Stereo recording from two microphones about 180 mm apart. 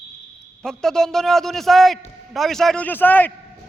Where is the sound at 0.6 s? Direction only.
5° left (ahead or behind).